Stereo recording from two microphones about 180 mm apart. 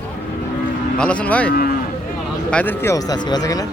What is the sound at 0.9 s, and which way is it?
Speech, 5° left (ahead or behind).